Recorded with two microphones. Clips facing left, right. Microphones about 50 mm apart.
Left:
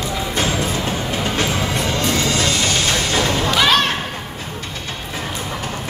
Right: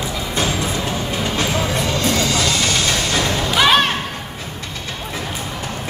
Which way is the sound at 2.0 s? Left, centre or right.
Left.